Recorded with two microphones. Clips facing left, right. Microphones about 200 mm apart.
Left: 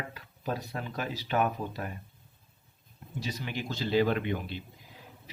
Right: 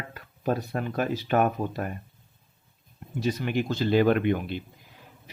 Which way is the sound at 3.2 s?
55° right (ahead or behind).